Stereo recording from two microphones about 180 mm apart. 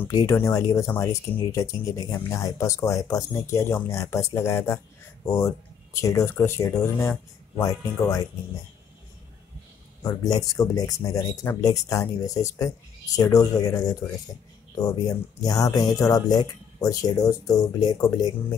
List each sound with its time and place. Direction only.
0.0 s speech: 20° left (ahead or behind)
10.0 s speech: 20° left (ahead or behind)